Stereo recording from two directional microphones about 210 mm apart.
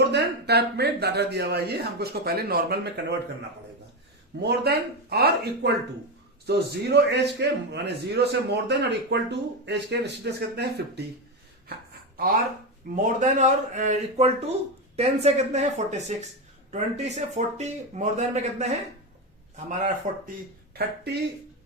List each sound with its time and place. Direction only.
0.1 s a man's voice: 50° right (ahead or behind)
4.4 s a man's voice: 50° right (ahead or behind)
12.1 s speech: 45° right (ahead or behind)
20.7 s a man's voice: 50° right (ahead or behind)